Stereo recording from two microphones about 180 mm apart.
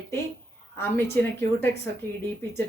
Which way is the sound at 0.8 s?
15° left (ahead or behind).